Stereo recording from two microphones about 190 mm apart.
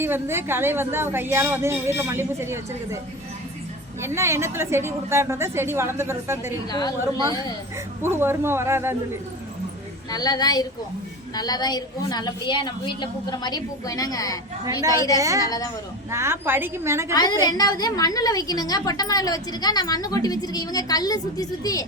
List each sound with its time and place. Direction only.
0.0 s a woman's voice: 10° right (ahead or behind)
4.0 s a woman's voice: 15° right (ahead or behind)
6.7 s a woman's voice: 20° left (ahead or behind)
8.0 s a woman's voice: 10° right (ahead or behind)
10.1 s a woman's voice: 20° left (ahead or behind)
14.6 s a woman's voice: 20° right (ahead or behind)
15.4 s a woman's voice: 20° left (ahead or behind)
16.1 s a woman's voice: 15° right (ahead or behind)
17.4 s a woman's voice: 20° left (ahead or behind)